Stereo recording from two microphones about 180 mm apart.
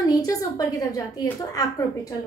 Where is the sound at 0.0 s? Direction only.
20° left (ahead or behind).